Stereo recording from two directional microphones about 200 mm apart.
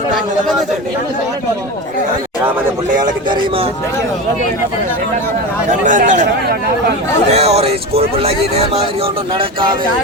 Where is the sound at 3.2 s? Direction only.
25° right (ahead or behind).